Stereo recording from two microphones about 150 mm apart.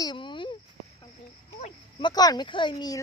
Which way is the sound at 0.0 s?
30° left (ahead or behind).